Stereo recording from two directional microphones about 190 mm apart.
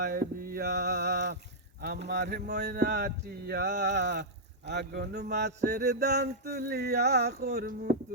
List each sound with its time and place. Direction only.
0.0 s speech: 55° right (ahead or behind)